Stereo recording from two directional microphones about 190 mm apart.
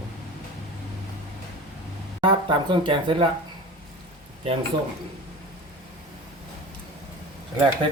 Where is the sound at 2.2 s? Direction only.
25° right (ahead or behind).